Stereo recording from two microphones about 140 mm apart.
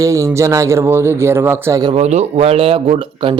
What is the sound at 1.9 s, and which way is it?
Speech, 50° right (ahead or behind).